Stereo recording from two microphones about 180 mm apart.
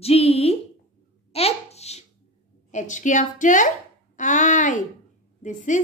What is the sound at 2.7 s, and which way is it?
A woman's voice, 45° left (ahead or behind).